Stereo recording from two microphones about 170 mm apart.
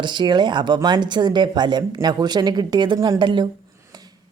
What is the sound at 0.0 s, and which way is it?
Speech, 25° right (ahead or behind).